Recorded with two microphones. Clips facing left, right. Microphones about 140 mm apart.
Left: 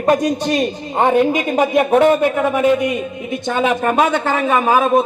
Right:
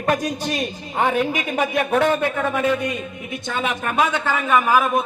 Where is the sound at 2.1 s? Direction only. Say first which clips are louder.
Left 6 dB; 15° left (ahead or behind).